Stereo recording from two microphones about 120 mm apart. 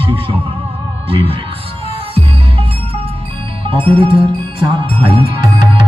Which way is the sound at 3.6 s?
50° right (ahead or behind).